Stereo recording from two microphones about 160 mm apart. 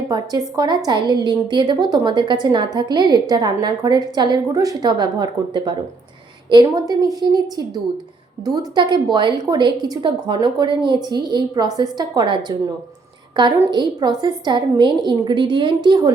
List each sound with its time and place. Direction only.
0.1 s a woman's voice: 25° right (ahead or behind)
13.7 s a woman's voice: 25° right (ahead or behind)